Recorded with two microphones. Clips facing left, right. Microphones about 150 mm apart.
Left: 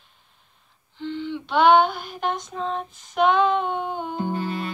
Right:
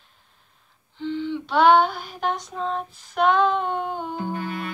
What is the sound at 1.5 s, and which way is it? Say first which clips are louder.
Child singing: even; 5° right (ahead or behind).